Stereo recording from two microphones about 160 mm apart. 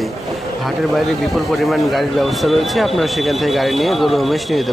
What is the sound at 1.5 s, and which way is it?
Speech, centre (ahead or behind).